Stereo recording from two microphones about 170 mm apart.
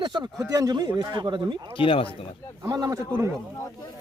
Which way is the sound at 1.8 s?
30° left (ahead or behind).